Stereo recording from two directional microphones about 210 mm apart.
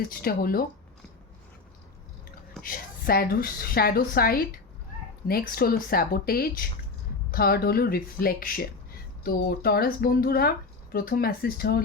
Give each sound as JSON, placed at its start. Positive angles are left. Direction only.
{"t": 0.1, "sound": "speech", "side_deg": 45}
{"t": 2.6, "sound": "speech", "side_deg": 45}